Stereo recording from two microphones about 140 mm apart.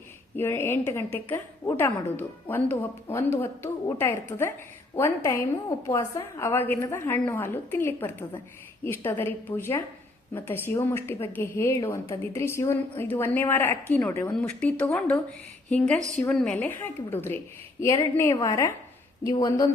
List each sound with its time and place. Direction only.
0.3 s a woman's voice: 15° left (ahead or behind)